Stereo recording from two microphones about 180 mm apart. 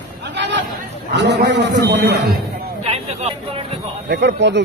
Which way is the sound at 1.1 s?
70° right (ahead or behind).